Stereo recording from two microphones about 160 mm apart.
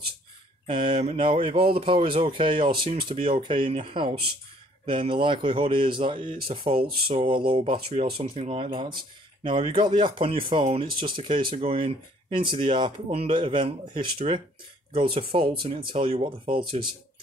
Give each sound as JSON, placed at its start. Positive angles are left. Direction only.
{"t": 0.7, "sound": "speech", "side_deg": -30}